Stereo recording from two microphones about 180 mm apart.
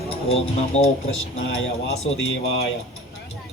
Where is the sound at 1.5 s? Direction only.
90° left.